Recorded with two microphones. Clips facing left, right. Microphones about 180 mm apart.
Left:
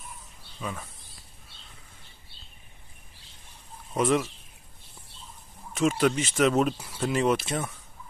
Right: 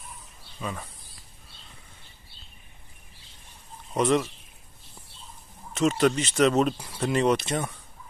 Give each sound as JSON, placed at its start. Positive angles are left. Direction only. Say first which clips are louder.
{"t": 0.6, "sound": "speech", "louder": "right 1 dB", "side_deg": 0}
{"t": 3.9, "sound": "speech", "louder": "right 1 dB", "side_deg": 5}
{"t": 5.8, "sound": "speech", "louder": "right 1 dB", "side_deg": 5}